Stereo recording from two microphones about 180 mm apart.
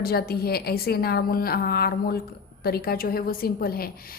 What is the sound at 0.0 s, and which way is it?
A woman's voice, 60° left (ahead or behind).